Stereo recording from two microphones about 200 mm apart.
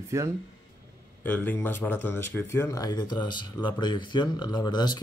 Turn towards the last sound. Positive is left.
turn(degrees=20)  # may be behind; listen again after turning